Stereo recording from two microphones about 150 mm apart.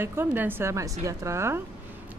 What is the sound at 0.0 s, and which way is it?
A woman's voice, 15° right (ahead or behind).